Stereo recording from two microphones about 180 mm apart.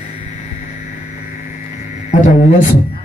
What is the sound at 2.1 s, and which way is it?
Speech, 45° left (ahead or behind).